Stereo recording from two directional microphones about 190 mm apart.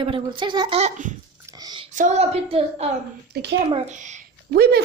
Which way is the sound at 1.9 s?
40° right (ahead or behind).